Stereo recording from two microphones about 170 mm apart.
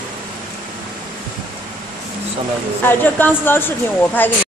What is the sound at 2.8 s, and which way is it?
A woman's voice, 10° left (ahead or behind).